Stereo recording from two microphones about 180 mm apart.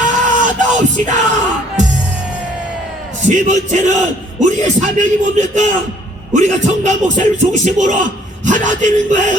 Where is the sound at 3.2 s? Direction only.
40° right (ahead or behind).